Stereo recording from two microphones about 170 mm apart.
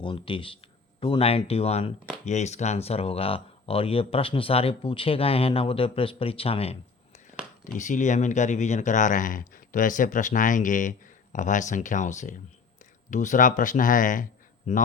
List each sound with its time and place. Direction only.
0.0 s speech: 30° left (ahead or behind)
7.6 s speech: 45° left (ahead or behind)